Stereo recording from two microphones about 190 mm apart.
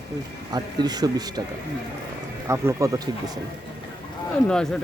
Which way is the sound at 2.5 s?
15° right (ahead or behind).